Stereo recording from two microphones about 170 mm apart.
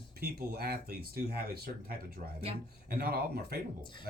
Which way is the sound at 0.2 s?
65° right (ahead or behind).